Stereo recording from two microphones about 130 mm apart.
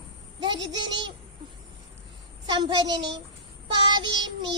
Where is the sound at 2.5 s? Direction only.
35° right (ahead or behind).